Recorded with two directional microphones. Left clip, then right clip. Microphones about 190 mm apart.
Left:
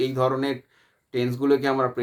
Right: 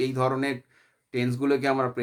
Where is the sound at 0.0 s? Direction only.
25° right (ahead or behind).